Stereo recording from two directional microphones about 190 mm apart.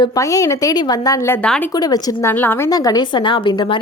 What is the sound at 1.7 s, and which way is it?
Speech, 20° left (ahead or behind).